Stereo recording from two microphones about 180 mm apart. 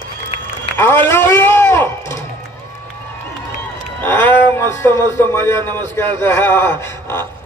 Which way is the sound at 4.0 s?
10° left (ahead or behind).